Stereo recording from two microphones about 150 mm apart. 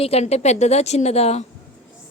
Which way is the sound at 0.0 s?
45° left (ahead or behind).